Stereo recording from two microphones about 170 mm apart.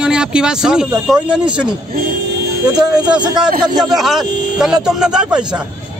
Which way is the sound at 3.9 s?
Centre (ahead or behind).